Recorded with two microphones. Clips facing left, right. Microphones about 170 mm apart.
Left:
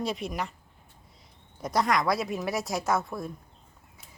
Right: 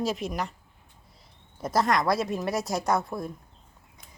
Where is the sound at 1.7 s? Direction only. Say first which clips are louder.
Right 1 dB; centre (ahead or behind).